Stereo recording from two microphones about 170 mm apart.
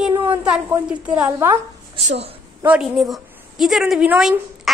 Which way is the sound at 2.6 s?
5° right (ahead or behind).